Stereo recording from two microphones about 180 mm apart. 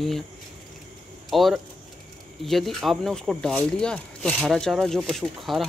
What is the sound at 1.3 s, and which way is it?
Speech, centre (ahead or behind).